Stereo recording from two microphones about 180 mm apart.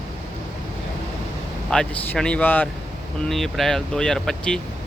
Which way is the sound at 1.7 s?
5° left (ahead or behind).